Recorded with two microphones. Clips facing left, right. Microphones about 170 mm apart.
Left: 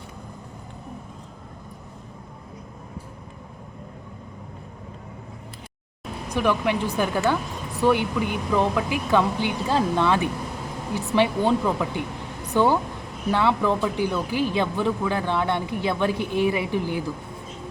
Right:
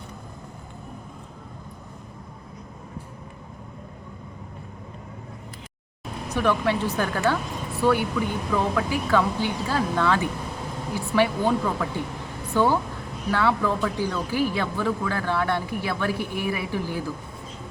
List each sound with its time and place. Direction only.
6.2 s speech: 15° left (ahead or behind)